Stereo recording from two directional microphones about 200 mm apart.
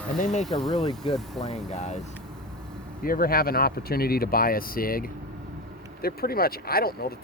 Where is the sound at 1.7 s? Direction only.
35° left (ahead or behind).